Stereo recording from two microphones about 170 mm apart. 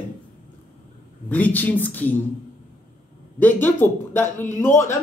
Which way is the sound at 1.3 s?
10° left (ahead or behind).